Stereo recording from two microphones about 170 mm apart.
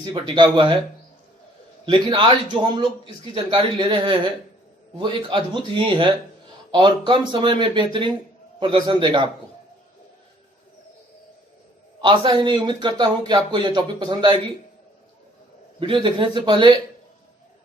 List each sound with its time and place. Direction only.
0.0 s a man's voice: 25° right (ahead or behind)
1.8 s a man's voice: 30° right (ahead or behind)
12.0 s a man's voice: 25° right (ahead or behind)
15.8 s a man's voice: 30° right (ahead or behind)